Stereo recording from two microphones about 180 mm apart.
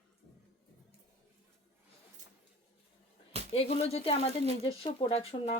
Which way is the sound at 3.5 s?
35° left (ahead or behind).